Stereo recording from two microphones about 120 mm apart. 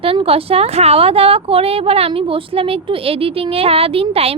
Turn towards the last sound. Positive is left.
turn(degrees=-55)  # may be behind; listen again after turning